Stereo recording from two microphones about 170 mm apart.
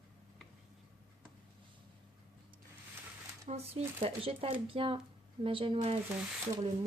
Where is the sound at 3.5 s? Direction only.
35° right (ahead or behind).